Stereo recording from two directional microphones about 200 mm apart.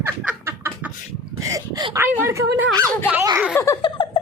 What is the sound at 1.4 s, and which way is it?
Speech, 15° right (ahead or behind).